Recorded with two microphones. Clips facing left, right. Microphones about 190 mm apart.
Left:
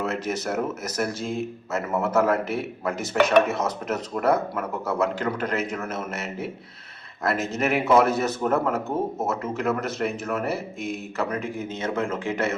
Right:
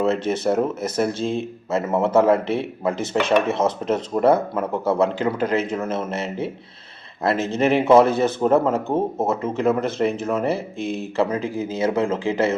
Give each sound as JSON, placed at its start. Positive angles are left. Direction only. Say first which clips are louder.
{"t": 0.0, "sound": "speech", "louder": "right 7 dB", "side_deg": -30}